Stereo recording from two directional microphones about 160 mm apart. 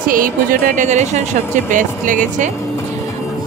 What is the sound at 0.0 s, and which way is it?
Speech, 60° right (ahead or behind).